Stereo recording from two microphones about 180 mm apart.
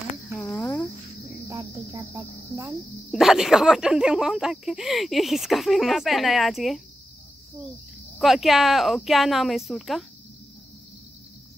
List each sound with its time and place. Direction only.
0.5 s cricket: 15° left (ahead or behind)
1.5 s cricket: 15° right (ahead or behind)
2.6 s speech: centre (ahead or behind)
8.2 s speech: centre (ahead or behind)